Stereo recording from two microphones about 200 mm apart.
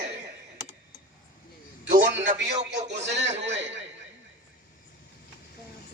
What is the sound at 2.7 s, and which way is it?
A man's voice, 60° right (ahead or behind).